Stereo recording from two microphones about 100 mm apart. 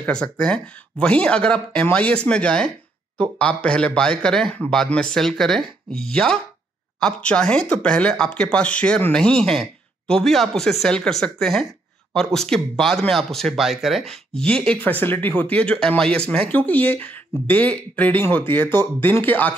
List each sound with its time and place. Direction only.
0.0 s speech: 10° left (ahead or behind)